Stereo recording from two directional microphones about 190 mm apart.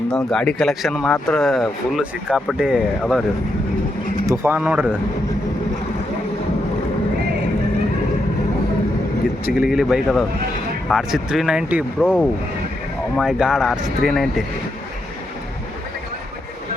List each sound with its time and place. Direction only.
0.1 s speech: 5° left (ahead or behind)
4.3 s speech: 10° right (ahead or behind)
9.5 s speech: centre (ahead or behind)